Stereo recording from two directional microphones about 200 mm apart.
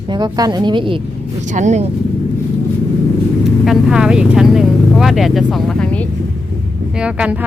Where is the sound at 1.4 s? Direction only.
40° right (ahead or behind).